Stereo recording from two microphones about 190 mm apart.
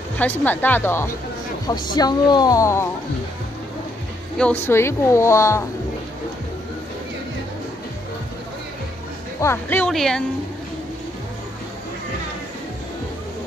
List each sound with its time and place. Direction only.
0.2 s a woman's voice: 10° left (ahead or behind)
4.4 s a woman's voice: 10° left (ahead or behind)
9.4 s speech: 10° left (ahead or behind)